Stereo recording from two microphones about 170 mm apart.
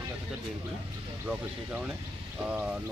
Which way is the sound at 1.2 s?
10° right (ahead or behind).